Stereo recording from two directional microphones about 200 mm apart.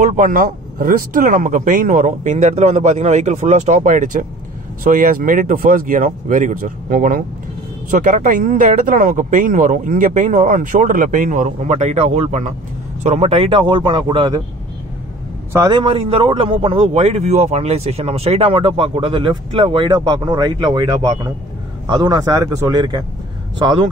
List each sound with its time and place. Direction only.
0.0 s speech: 40° right (ahead or behind); by 14.4 s 20° right (ahead or behind)
15.5 s speech: 20° right (ahead or behind)